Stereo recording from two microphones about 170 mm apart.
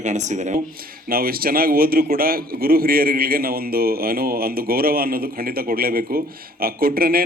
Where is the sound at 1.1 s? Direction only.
60° right (ahead or behind).